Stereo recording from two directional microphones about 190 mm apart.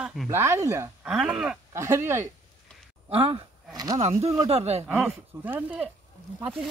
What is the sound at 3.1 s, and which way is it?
Speech, 25° right (ahead or behind).